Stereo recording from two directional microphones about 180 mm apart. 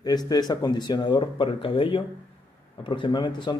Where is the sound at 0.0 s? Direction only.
20° left (ahead or behind).